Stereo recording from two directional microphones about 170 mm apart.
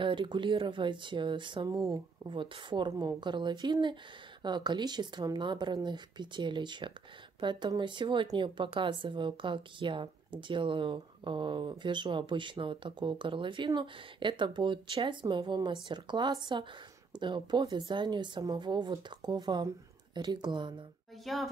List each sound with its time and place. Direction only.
0.0 s speech: 30° right (ahead or behind)
21.3 s speech: centre (ahead or behind)